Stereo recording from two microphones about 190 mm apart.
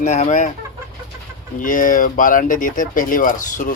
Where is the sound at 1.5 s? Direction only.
45° left (ahead or behind).